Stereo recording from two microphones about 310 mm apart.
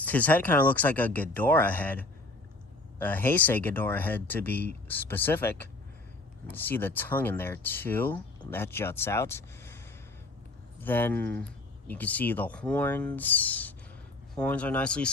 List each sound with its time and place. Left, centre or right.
0.0 s speech: centre